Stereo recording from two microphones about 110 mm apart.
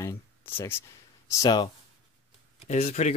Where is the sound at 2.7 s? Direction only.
90° left.